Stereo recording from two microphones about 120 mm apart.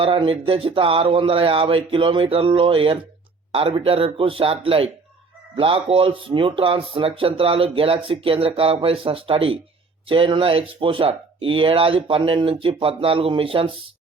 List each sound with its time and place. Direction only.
0.0 s speech: 50° right (ahead or behind)